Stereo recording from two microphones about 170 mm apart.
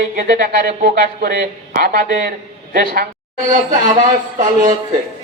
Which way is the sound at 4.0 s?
50° right (ahead or behind).